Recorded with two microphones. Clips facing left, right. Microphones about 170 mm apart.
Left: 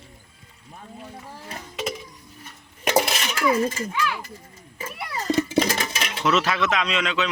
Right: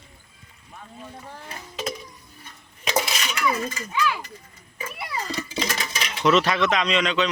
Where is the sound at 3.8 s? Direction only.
45° left (ahead or behind).